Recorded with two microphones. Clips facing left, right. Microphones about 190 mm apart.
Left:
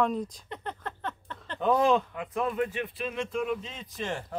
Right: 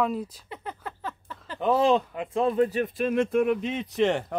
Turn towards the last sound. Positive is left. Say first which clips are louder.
# right 10 dB
turn(degrees=-70)  # may be behind; listen again after turning